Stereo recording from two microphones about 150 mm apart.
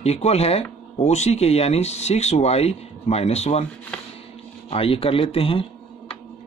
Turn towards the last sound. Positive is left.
turn(degrees=40)  # may be behind; listen again after turning